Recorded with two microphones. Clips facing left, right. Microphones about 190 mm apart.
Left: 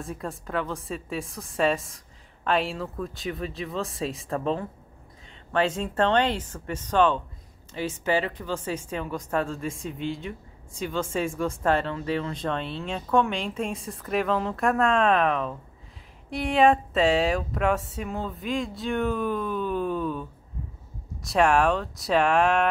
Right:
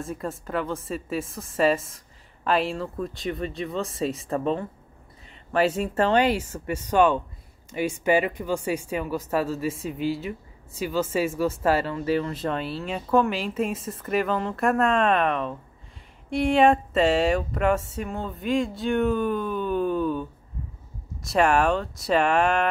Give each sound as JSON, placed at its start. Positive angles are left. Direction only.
{"t": 0.0, "sound": "speech", "side_deg": 0}